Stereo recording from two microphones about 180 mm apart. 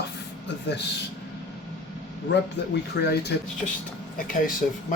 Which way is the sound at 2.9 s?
65° left (ahead or behind).